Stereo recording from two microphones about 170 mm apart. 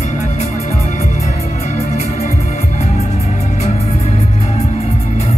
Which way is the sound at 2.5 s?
40° left (ahead or behind).